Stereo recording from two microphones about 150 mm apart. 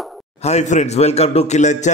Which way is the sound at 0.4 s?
50° left (ahead or behind).